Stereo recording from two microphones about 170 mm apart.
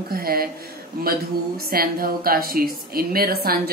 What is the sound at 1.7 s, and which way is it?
A woman's voice, 60° right (ahead or behind).